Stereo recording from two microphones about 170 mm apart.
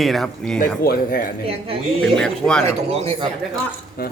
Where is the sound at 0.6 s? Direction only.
60° left (ahead or behind).